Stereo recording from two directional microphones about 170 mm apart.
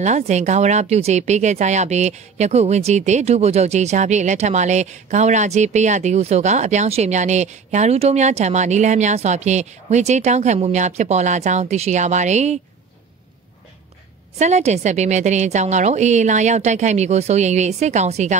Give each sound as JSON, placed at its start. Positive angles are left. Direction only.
{"t": 0.0, "sound": "a woman's voice", "side_deg": -45}
{"t": 14.4, "sound": "a woman's voice", "side_deg": -40}